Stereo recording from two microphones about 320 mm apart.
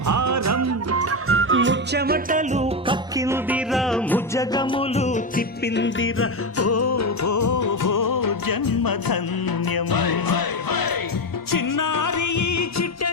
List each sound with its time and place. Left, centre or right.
0.1 s music: right; by 10.9 s left
11.5 s music: left